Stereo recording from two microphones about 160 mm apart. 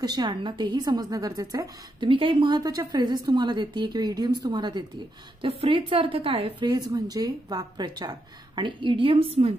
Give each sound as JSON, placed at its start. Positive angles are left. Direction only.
{"t": 0.0, "sound": "a woman's voice", "side_deg": -25}
{"t": 6.7, "sound": "a woman's voice", "side_deg": -25}